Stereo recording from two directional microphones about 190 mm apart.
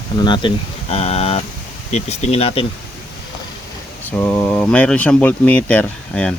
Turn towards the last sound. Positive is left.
turn(degrees=5)  # may be behind; listen again after turning